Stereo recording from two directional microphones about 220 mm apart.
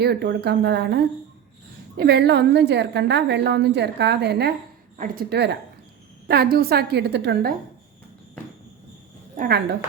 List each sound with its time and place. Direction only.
0.0 s a woman's voice: 50° right (ahead or behind)
9.3 s a woman's voice: 40° right (ahead or behind)